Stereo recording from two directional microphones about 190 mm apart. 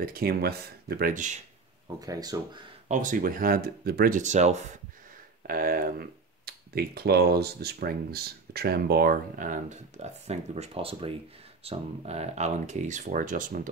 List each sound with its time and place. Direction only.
0.0 s speech: 50° right (ahead or behind)
1.9 s speech: 20° right (ahead or behind)
2.9 s speech: 40° right (ahead or behind)
5.5 s speech: 50° right (ahead or behind)